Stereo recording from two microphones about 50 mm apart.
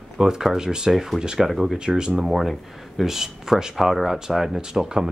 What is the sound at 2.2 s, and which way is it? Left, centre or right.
Speech, centre.